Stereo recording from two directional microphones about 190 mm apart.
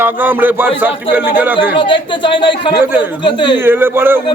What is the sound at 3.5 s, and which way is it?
Speech, 10° right (ahead or behind).